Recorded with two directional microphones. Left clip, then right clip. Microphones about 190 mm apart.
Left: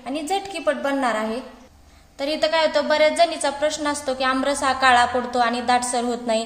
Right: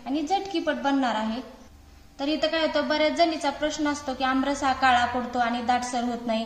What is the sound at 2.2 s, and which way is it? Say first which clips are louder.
A woman's voice: left 5 dB; 50° left (ahead or behind).